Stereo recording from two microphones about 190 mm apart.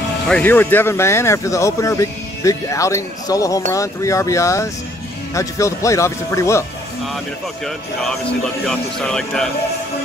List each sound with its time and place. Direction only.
0.3 s speech: 10° left (ahead or behind)
7.6 s speech: centre (ahead or behind)